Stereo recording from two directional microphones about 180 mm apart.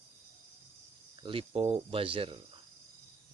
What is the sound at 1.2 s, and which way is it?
Speech, 30° right (ahead or behind).